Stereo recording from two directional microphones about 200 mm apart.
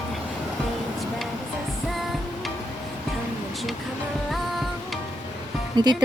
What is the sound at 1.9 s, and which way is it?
Music, centre (ahead or behind).